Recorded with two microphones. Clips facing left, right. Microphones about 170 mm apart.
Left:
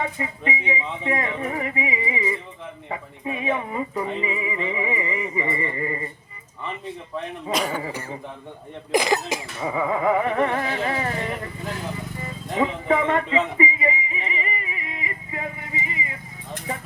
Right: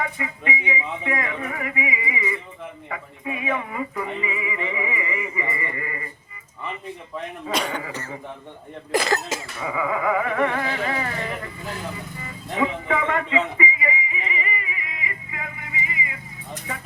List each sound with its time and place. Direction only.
0.0 s speech: 30° left (ahead or behind)
7.5 s speech: centre (ahead or behind)
8.9 s speech: 15° left (ahead or behind)
9.6 s speech: 30° left (ahead or behind)
12.5 s music: 30° left (ahead or behind)